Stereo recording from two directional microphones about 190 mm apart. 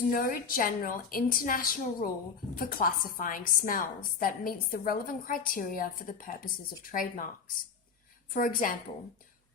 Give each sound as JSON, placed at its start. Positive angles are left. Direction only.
{"t": 0.1, "sound": "a woman's voice", "side_deg": 45}